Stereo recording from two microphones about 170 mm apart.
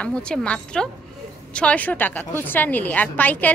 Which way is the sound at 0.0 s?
5° left (ahead or behind).